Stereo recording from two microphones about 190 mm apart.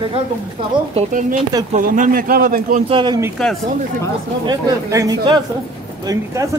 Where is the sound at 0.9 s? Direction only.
40° right (ahead or behind).